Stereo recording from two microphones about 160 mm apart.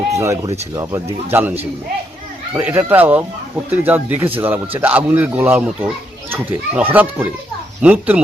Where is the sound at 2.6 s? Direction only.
15° right (ahead or behind).